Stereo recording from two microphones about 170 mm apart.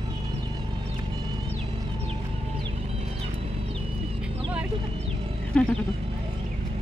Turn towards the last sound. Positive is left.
turn(degrees=10)  # may be behind; listen again after turning